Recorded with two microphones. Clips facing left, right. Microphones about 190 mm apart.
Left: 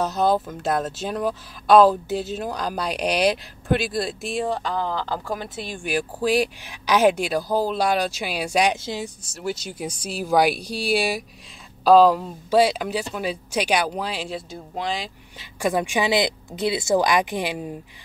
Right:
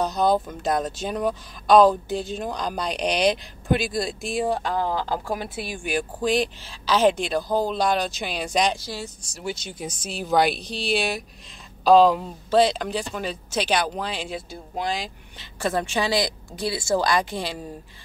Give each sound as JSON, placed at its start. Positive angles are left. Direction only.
{"t": 0.0, "sound": "speech", "side_deg": 5}
{"t": 4.5, "sound": "speech", "side_deg": -10}
{"t": 8.7, "sound": "speech", "side_deg": 20}
{"t": 9.2, "sound": "speech", "side_deg": 5}
{"t": 15.6, "sound": "speech", "side_deg": 15}